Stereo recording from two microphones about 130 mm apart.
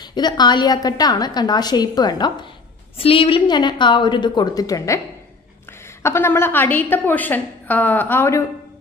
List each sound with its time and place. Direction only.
0.0 s a woman's voice: 35° left (ahead or behind)
3.0 s a woman's voice: 45° left (ahead or behind); by 8.5 s 20° left (ahead or behind)